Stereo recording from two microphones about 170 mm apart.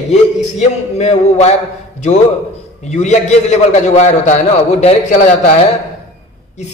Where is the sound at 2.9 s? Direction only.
40° left (ahead or behind).